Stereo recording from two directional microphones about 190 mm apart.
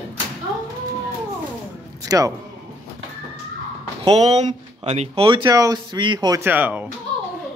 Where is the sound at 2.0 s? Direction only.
20° right (ahead or behind).